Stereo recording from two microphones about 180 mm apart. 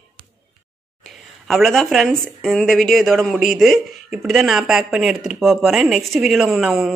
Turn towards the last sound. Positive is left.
turn(degrees=0)  # may be behind; listen again after turning